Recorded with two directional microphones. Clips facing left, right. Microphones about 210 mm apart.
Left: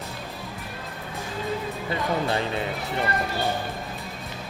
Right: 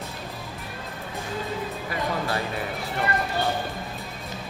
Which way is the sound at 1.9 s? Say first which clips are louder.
Left 3 dB; 25° left (ahead or behind).